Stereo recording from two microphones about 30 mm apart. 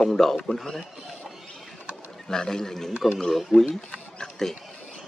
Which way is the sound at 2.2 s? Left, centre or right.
Left.